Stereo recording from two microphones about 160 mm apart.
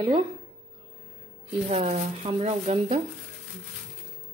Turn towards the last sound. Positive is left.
turn(degrees=-45)  # may be behind; listen again after turning